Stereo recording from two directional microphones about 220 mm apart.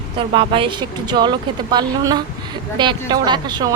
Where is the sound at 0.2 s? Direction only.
25° right (ahead or behind).